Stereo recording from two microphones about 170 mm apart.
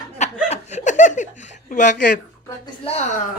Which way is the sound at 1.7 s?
50° left (ahead or behind).